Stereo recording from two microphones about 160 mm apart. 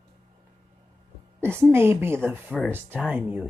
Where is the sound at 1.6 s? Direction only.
15° right (ahead or behind).